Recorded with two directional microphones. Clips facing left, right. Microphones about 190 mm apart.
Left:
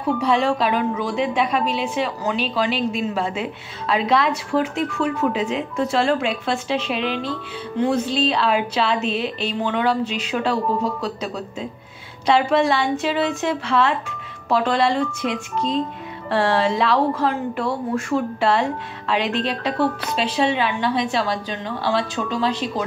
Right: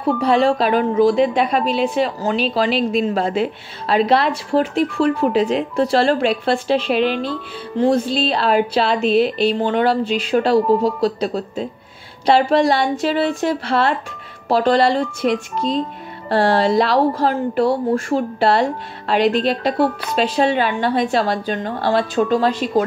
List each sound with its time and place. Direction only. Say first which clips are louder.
0.2 s a woman's voice: right 5 dB; 35° right (ahead or behind)
7.0 s speech: right 5 dB; 5° right (ahead or behind)
7.8 s a woman's voice: right 3 dB; 35° right (ahead or behind)
15.5 s speech: right 2 dB; 10° right (ahead or behind)
16.3 s a woman's voice: right 4 dB; 35° right (ahead or behind)